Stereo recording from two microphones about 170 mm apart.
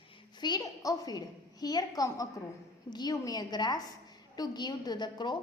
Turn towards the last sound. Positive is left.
turn(degrees=25)  # may be behind; listen again after turning